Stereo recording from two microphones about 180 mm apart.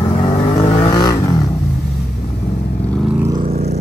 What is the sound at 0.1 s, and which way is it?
Vehicle, 30° left (ahead or behind).